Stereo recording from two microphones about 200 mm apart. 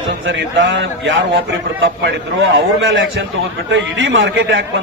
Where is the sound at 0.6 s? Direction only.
65° right (ahead or behind).